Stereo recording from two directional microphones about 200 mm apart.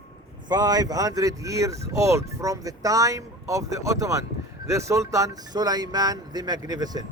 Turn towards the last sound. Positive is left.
turn(degrees=-20)  # may be behind; listen again after turning